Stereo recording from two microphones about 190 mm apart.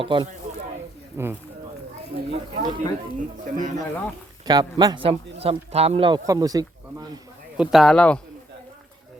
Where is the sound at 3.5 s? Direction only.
45° right (ahead or behind).